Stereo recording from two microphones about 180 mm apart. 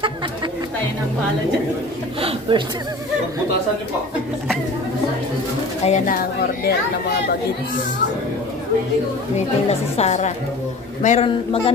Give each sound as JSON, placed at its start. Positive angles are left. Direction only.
{"t": 2.5, "sound": "speech", "side_deg": -30}
{"t": 5.9, "sound": "a woman's voice", "side_deg": 45}
{"t": 9.7, "sound": "a woman's voice", "side_deg": 35}
{"t": 11.2, "sound": "a man's voice", "side_deg": 30}